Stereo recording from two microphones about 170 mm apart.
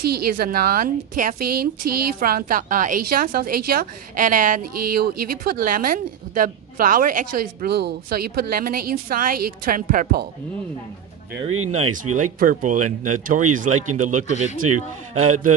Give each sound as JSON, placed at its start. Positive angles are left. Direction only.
{"t": 0.0, "sound": "a woman's voice", "side_deg": -65}
{"t": 12.0, "sound": "speech", "side_deg": -50}